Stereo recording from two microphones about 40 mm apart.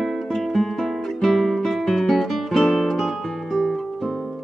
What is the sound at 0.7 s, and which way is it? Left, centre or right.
Guitar, centre.